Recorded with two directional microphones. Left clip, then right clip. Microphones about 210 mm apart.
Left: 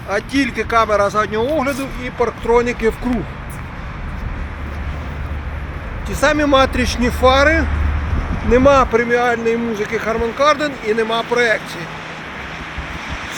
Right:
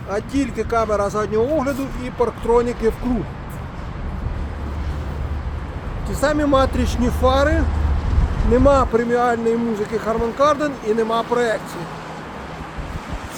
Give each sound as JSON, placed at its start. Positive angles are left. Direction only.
{"t": 0.1, "sound": "speech", "side_deg": 0}
{"t": 6.1, "sound": "speech", "side_deg": 15}